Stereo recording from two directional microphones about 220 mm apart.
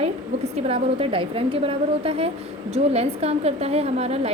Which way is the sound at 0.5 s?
25° right (ahead or behind).